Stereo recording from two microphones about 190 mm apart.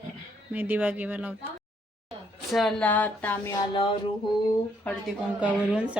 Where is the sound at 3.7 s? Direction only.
25° left (ahead or behind).